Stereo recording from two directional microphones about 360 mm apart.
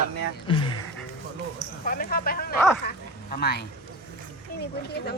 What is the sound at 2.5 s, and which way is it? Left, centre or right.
Speech, centre.